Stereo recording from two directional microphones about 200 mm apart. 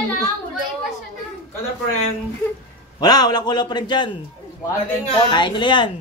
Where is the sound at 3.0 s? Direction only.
20° left (ahead or behind).